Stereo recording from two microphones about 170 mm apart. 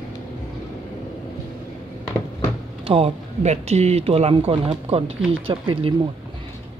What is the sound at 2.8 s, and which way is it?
Speech, 35° right (ahead or behind).